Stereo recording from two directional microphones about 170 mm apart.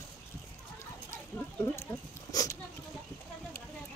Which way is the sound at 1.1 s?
15° left (ahead or behind).